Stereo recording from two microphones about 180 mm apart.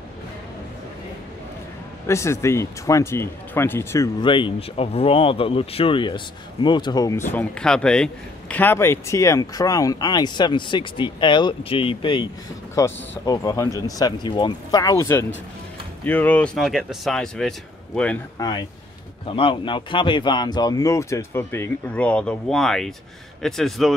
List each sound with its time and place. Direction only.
2.0 s speech: 15° left (ahead or behind)
4.2 s speech: 25° left (ahead or behind)
12.7 s speech: 15° left (ahead or behind)
18.4 s speech: 25° left (ahead or behind); by 23.9 s centre (ahead or behind)